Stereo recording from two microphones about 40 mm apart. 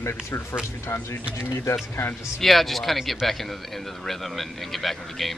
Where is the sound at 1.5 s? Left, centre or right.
Left.